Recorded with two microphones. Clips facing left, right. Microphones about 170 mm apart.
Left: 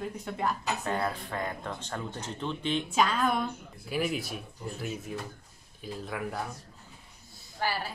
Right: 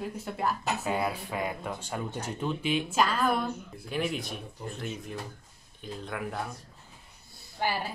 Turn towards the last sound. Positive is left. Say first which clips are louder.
# right 1 dB
turn(degrees=-20)  # may be behind; listen again after turning